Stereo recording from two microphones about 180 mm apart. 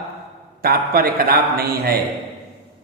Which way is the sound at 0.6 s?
55° right (ahead or behind).